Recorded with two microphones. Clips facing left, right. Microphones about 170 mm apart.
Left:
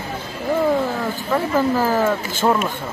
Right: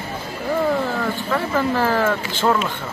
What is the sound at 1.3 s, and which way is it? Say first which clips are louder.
Speech: left 3 dB; 10° left (ahead or behind).